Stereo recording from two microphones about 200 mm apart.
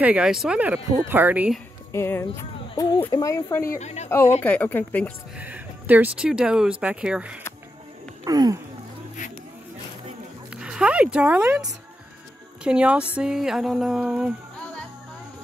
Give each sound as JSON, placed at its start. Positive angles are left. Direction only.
{"t": 0.0, "sound": "speech", "side_deg": -5}
{"t": 1.9, "sound": "speech", "side_deg": 10}
{"t": 3.6, "sound": "a woman's voice", "side_deg": 35}
{"t": 4.4, "sound": "speech", "side_deg": 10}
{"t": 5.4, "sound": "speech", "side_deg": -10}
{"t": 8.3, "sound": "a sound", "side_deg": -20}
{"t": 10.5, "sound": "speech", "side_deg": -5}
{"t": 12.6, "sound": "speech", "side_deg": -5}